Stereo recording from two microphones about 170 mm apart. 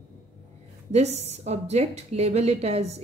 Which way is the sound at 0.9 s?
40° right (ahead or behind).